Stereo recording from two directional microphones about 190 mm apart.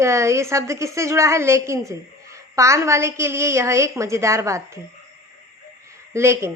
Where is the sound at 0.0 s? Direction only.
15° right (ahead or behind).